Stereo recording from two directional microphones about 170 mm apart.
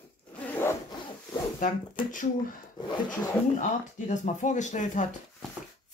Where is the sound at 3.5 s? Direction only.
45° left (ahead or behind).